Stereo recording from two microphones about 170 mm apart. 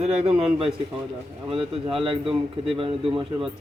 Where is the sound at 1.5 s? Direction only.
30° right (ahead or behind).